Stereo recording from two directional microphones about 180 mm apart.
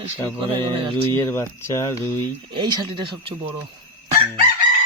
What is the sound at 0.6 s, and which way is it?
Speech, 30° right (ahead or behind).